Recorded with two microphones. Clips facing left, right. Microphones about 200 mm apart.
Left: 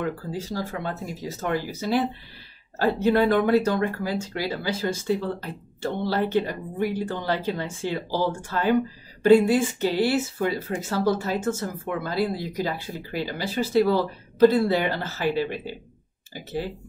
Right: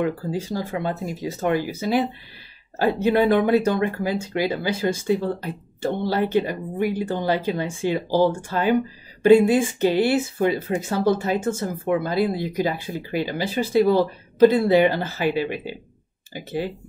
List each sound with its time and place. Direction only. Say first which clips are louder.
0.0 s speech: right 5 dB; 15° right (ahead or behind)